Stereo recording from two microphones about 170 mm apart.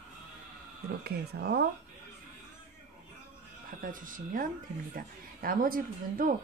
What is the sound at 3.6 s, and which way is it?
A woman's voice, 55° right (ahead or behind).